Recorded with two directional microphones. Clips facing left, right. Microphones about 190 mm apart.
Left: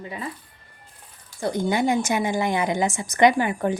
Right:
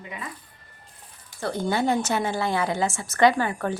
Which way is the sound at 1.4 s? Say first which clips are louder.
Left 2 dB; 15° left (ahead or behind).